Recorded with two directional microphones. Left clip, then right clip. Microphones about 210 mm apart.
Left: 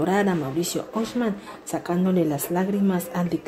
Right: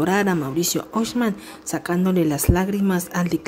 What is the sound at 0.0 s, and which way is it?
A woman's voice, 10° right (ahead or behind).